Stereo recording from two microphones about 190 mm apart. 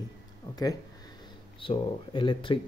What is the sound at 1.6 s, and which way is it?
Speech, 25° left (ahead or behind).